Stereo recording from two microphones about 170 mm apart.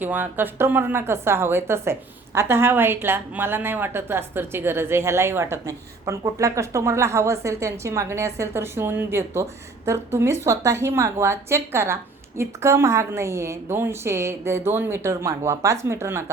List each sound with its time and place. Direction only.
0.0 s a woman's voice: 10° right (ahead or behind)